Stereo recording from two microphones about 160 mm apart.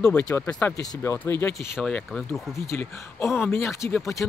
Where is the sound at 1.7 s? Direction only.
5° left (ahead or behind).